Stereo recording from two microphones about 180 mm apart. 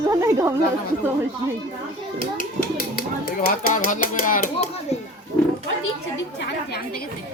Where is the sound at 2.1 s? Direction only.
45° left (ahead or behind).